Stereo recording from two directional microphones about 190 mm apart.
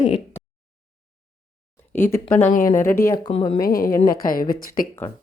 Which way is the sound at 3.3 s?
35° left (ahead or behind).